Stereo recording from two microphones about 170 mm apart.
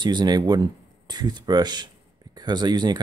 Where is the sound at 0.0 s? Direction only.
25° right (ahead or behind).